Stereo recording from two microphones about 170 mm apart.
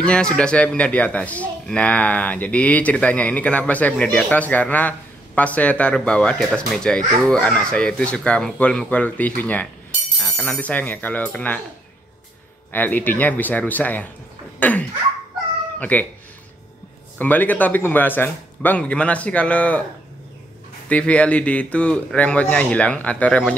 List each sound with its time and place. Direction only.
0.0 s speech: 5° left (ahead or behind)
12.7 s speech: 10° left (ahead or behind)
17.2 s speech: 10° left (ahead or behind)
20.9 s speech: 5° left (ahead or behind)